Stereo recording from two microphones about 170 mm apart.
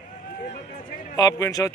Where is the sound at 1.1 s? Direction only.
20° left (ahead or behind).